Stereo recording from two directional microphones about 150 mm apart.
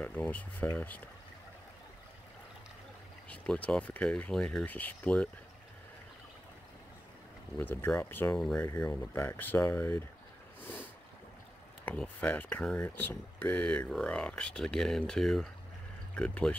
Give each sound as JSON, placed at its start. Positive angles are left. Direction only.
{"t": 0.0, "sound": "speech", "side_deg": 10}
{"t": 3.3, "sound": "speech", "side_deg": 10}
{"t": 7.5, "sound": "speech", "side_deg": 15}
{"t": 11.8, "sound": "speech", "side_deg": 10}